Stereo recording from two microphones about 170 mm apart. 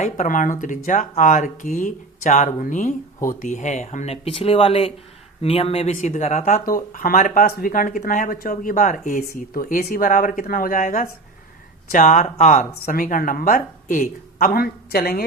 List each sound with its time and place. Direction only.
0.0 s speech: 50° left (ahead or behind)
12.8 s speech: 55° left (ahead or behind)